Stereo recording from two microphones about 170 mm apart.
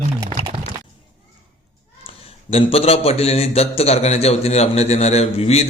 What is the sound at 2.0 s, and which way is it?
A man's voice, 35° left (ahead or behind).